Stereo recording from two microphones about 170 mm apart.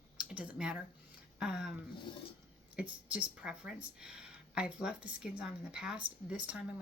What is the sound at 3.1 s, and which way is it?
A woman's voice, 5° right (ahead or behind).